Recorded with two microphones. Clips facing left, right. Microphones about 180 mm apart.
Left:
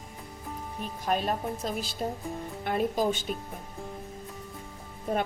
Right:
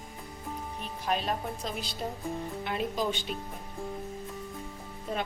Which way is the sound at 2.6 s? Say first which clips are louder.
Left 5 dB; 50° left (ahead or behind).